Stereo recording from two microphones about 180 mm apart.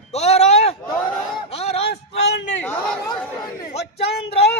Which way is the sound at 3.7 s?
35° left (ahead or behind).